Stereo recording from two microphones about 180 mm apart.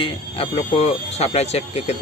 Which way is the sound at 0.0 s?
30° left (ahead or behind).